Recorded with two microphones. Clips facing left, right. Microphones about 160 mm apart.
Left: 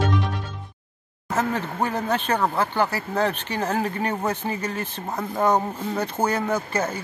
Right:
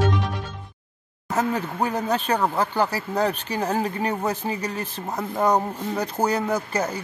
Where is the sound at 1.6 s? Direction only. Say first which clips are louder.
Right 1 dB; 10° right (ahead or behind).